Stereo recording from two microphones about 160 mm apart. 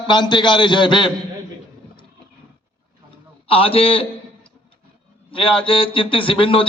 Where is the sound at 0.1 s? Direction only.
30° left (ahead or behind).